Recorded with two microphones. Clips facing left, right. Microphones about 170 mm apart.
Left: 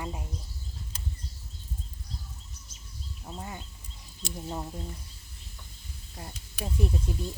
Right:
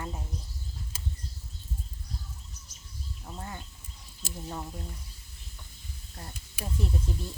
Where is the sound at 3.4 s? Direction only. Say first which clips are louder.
Left 1 dB; 15° left (ahead or behind).